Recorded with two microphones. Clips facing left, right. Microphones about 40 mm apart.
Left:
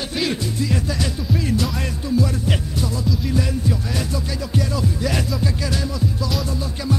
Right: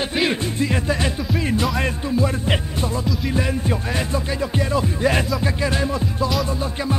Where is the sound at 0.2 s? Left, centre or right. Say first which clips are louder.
Right 1 dB; right.